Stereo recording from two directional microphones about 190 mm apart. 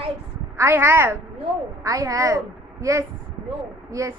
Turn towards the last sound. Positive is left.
turn(degrees=-15)  # may be behind; listen again after turning